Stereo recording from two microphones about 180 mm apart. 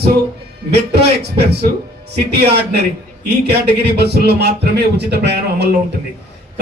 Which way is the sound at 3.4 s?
65° right (ahead or behind).